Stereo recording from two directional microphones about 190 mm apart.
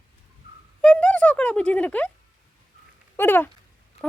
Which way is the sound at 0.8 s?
5° left (ahead or behind).